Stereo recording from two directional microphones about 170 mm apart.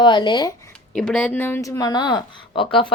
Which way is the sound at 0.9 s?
5° left (ahead or behind).